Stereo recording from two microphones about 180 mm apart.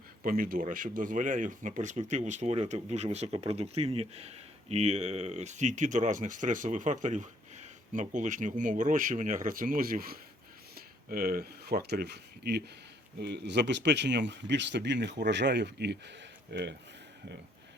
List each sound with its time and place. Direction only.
0.2 s speech: 50° right (ahead or behind); by 16.7 s 70° right (ahead or behind)